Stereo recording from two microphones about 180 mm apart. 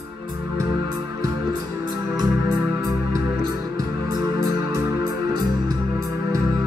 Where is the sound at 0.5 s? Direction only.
20° right (ahead or behind).